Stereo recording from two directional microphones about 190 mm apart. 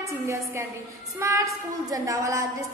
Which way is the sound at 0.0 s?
15° right (ahead or behind).